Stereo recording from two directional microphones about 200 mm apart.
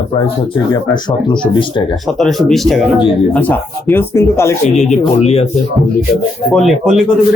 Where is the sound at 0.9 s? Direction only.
25° left (ahead or behind).